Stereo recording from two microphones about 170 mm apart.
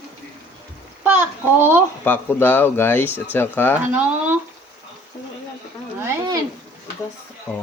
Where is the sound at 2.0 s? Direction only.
10° left (ahead or behind).